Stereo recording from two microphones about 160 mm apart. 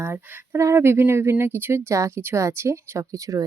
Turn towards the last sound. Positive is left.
turn(degrees=-20)  # may be behind; listen again after turning